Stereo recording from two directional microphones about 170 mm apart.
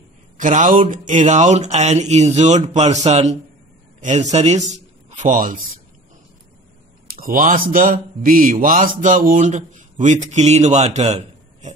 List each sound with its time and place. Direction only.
0.4 s a man's voice: 50° right (ahead or behind)
7.1 s a man's voice: 55° right (ahead or behind)